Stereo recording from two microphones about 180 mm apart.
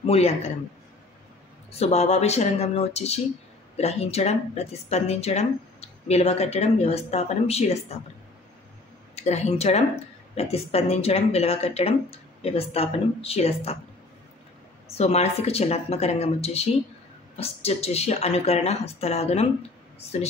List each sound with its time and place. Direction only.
0.0 s speech: 35° left (ahead or behind)
1.7 s speech: 35° left (ahead or behind)
9.1 s a woman's voice: 40° left (ahead or behind)
15.0 s speech: 35° left (ahead or behind)